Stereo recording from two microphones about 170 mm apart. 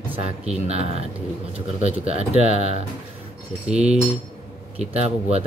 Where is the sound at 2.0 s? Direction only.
35° right (ahead or behind).